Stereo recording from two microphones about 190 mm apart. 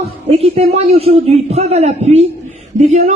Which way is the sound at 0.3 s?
30° right (ahead or behind).